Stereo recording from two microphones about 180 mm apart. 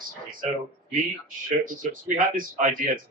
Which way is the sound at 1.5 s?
45° right (ahead or behind).